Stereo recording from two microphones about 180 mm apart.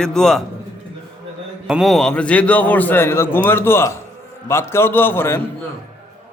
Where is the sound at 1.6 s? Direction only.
Centre (ahead or behind).